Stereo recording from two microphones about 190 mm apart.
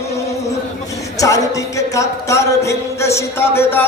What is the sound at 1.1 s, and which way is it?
Music, 15° left (ahead or behind).